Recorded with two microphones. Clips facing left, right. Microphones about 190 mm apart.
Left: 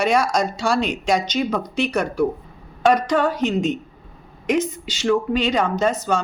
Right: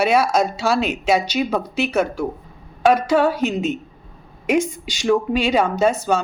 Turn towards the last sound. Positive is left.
turn(degrees=-10)  # may be behind; listen again after turning